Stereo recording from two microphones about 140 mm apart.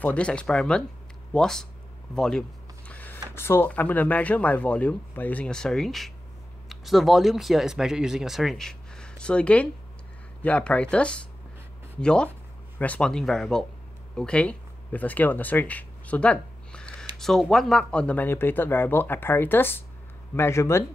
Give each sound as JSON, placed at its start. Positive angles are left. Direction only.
{"t": 0.0, "sound": "speech", "side_deg": 10}
{"t": 2.9, "sound": "a sound", "side_deg": 10}
{"t": 3.3, "sound": "speech", "side_deg": 15}